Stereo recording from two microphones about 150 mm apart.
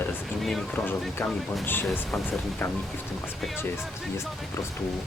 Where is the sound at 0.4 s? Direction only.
Centre (ahead or behind).